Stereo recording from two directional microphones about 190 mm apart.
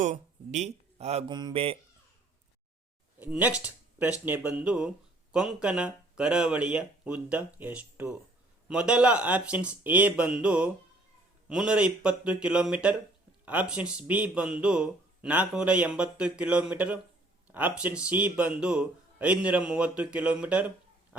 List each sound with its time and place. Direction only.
0.0 s speech: 40° right (ahead or behind)
1.3 s speech: 20° right (ahead or behind)
3.2 s speech: 10° right (ahead or behind)
3.6 s a sound: 10° right (ahead or behind)
4.3 s speech: 10° right (ahead or behind)